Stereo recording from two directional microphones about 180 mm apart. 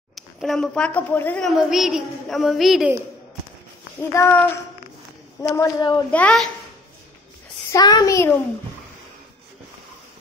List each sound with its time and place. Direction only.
0.1 s a woman's voice: centre (ahead or behind)
4.1 s child singing: 10° left (ahead or behind)
5.4 s speech: 15° left (ahead or behind)
6.1 s a woman's voice: 5° left (ahead or behind)
7.7 s speech: 20° left (ahead or behind)